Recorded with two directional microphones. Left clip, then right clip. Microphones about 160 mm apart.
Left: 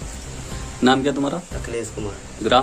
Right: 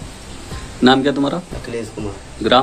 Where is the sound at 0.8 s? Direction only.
Centre (ahead or behind).